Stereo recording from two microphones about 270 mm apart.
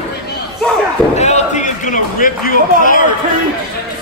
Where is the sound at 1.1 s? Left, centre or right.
Left.